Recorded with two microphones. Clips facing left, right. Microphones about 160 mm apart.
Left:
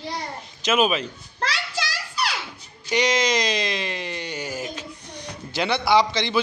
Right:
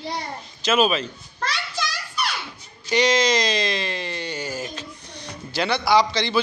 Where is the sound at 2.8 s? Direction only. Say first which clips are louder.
Right 2 dB; 10° left (ahead or behind).